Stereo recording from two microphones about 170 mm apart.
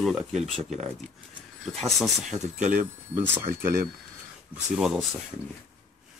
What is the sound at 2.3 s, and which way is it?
Speech, 45° right (ahead or behind).